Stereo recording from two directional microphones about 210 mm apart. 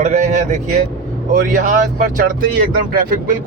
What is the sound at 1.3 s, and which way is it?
Speech, 40° right (ahead or behind).